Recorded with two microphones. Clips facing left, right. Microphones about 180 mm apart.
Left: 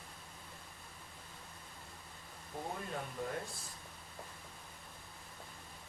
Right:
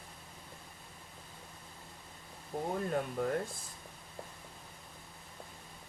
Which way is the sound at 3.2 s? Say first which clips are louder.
Right 6 dB; 65° right (ahead or behind).